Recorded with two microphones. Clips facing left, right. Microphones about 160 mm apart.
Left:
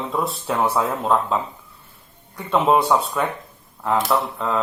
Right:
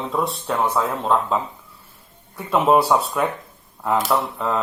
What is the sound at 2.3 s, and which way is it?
Speech, 5° right (ahead or behind).